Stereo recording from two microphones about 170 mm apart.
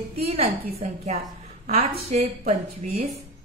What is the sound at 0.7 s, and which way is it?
A woman's voice, 40° right (ahead or behind).